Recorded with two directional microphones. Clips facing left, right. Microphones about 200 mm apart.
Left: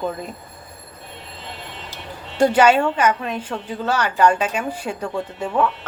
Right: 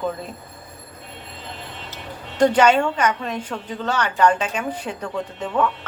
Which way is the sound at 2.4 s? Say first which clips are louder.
Left 1 dB; 10° left (ahead or behind).